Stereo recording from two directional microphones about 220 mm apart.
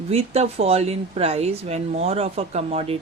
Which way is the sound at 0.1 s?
30° right (ahead or behind).